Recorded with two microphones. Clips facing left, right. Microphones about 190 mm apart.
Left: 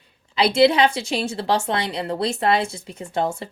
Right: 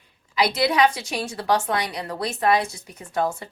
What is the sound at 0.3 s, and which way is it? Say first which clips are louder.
A woman's voice: left 4 dB; 25° left (ahead or behind).